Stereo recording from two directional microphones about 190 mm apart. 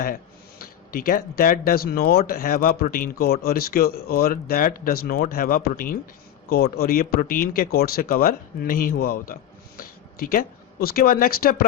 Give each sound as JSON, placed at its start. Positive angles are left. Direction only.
{"t": 0.6, "sound": "speech", "side_deg": 50}